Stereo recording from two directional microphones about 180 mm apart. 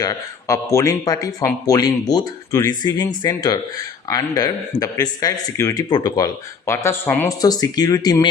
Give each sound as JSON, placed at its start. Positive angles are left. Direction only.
{"t": 0.0, "sound": "a man's voice", "side_deg": 20}